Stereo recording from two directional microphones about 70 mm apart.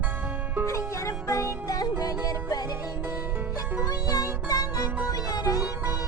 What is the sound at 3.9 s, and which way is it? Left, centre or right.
Music, left.